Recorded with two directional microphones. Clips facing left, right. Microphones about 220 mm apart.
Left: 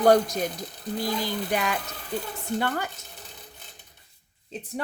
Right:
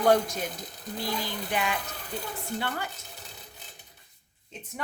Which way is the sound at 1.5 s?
45° left (ahead or behind).